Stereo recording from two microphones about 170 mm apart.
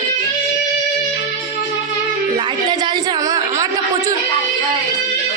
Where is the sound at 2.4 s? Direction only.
25° right (ahead or behind).